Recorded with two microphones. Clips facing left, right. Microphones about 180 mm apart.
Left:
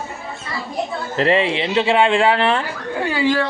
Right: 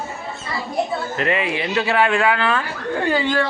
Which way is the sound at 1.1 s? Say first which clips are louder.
Left 6 dB; 30° left (ahead or behind).